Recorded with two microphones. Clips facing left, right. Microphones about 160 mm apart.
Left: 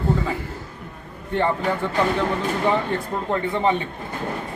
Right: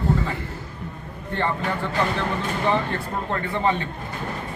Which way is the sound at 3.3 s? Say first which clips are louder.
Left 3 dB; 15° left (ahead or behind).